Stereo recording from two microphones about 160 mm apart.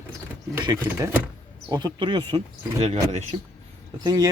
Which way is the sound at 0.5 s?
20° right (ahead or behind).